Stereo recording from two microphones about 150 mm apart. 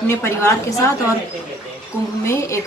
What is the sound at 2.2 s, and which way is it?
Speech, 20° left (ahead or behind).